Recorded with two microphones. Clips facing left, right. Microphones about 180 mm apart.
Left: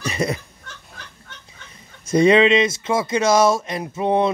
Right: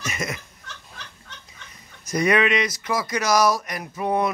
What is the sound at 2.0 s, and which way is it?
Speech, 25° left (ahead or behind).